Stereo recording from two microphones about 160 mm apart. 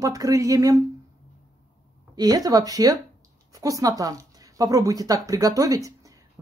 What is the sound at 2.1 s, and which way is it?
Speech, 25° right (ahead or behind).